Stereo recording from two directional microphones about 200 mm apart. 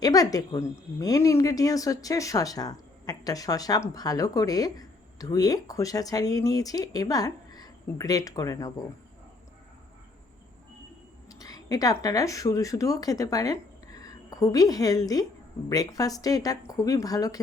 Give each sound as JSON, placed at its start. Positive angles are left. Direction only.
{"t": 0.0, "sound": "speech", "side_deg": 20}
{"t": 11.3, "sound": "speech", "side_deg": 20}